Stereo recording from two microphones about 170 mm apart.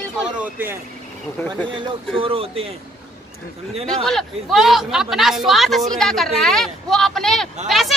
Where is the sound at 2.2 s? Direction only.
35° right (ahead or behind).